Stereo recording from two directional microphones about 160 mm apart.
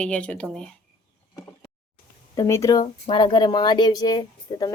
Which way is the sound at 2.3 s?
20° left (ahead or behind).